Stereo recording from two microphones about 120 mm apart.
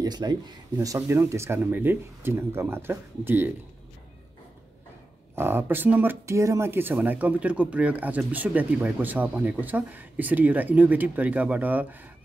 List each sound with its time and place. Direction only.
0.0 s speech: 35° right (ahead or behind)
0.7 s speech: 25° right (ahead or behind)
5.3 s speech: 20° right (ahead or behind)